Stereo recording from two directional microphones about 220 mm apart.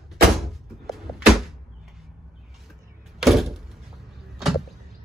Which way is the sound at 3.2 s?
Centre (ahead or behind).